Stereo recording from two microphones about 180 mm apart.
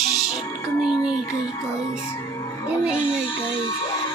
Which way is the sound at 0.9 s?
25° left (ahead or behind).